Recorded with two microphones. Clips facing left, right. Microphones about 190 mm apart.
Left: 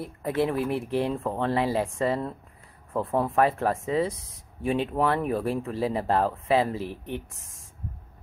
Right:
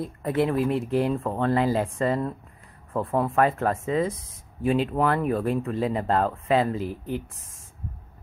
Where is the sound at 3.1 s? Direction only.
30° left (ahead or behind).